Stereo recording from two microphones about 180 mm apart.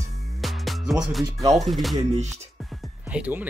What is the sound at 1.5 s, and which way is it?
Speech, centre (ahead or behind).